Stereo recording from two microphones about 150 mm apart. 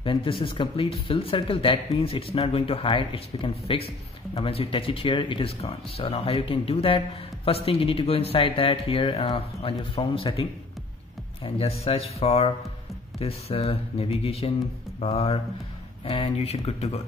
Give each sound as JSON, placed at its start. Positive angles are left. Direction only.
{"t": 0.0, "sound": "speech", "side_deg": 35}
{"t": 11.4, "sound": "speech", "side_deg": 40}